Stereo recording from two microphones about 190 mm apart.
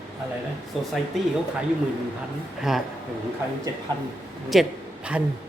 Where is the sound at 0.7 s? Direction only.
Centre (ahead or behind).